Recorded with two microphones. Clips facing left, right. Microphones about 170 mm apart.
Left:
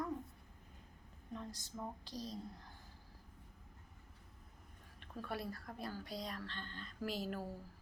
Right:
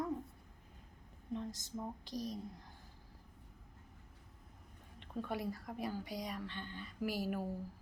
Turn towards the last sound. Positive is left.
turn(degrees=-15)  # may be behind; listen again after turning